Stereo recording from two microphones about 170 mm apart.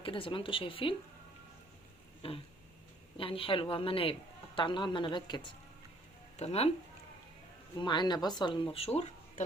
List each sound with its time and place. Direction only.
0.0 s a woman's voice: 30° left (ahead or behind)
2.2 s a woman's voice: 35° left (ahead or behind)
6.3 s speech: 40° left (ahead or behind)
7.8 s speech: 25° left (ahead or behind)